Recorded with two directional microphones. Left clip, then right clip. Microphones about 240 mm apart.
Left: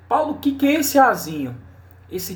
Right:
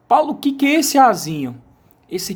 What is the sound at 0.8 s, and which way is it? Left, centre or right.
Speech, right.